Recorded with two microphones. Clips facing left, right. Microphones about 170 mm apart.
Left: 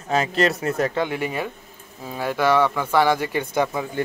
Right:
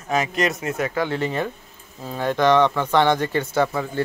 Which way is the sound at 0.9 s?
15° left (ahead or behind).